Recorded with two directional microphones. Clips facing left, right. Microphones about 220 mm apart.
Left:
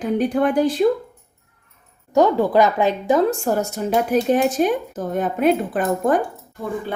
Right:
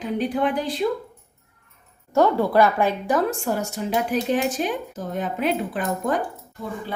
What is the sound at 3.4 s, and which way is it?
A woman's voice, 45° left (ahead or behind).